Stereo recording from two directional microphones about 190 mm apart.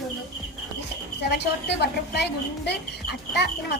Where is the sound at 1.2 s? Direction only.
60° left (ahead or behind).